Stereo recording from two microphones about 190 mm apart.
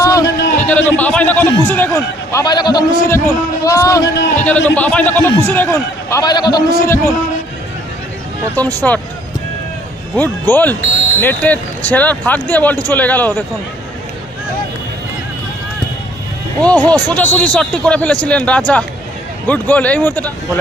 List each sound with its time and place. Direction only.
0.0 s a man's voice: 15° left (ahead or behind)
8.5 s a man's voice: 10° left (ahead or behind)
10.2 s a man's voice: 10° left (ahead or behind)
16.6 s a man's voice: 5° left (ahead or behind)